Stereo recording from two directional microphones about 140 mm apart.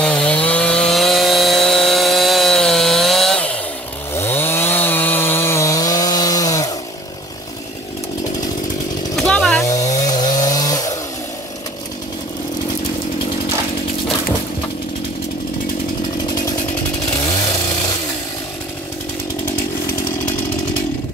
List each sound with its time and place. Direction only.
0.0 s wood: 5° left (ahead or behind)
4.1 s chainsaw: 15° left (ahead or behind)
9.1 s chainsaw: 5° left (ahead or behind)
10.0 s chainsaw: 30° left (ahead or behind)